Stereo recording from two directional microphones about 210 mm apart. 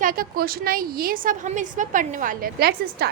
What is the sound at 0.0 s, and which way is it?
A woman's voice, 40° right (ahead or behind).